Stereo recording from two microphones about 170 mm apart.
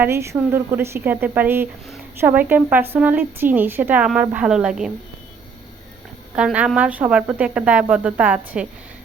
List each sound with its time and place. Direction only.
0.0 s a woman's voice: 15° right (ahead or behind)
6.3 s a woman's voice: 5° right (ahead or behind)